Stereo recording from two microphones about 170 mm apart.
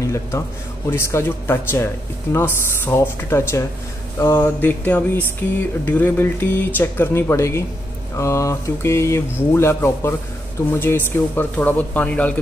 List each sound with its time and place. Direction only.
0.0 s speech: 20° left (ahead or behind)